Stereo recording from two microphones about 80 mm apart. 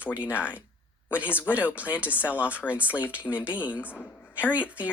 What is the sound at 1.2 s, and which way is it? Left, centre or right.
Speech, left.